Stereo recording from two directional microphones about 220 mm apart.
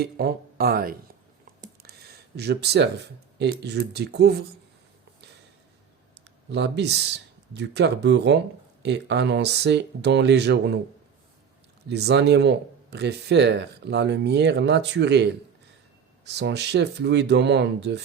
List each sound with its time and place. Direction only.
0.0 s speech: 45° right (ahead or behind)
6.5 s speech: 50° right (ahead or behind)
11.9 s speech: 50° right (ahead or behind)